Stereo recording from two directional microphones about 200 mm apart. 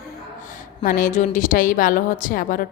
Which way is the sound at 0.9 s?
40° left (ahead or behind).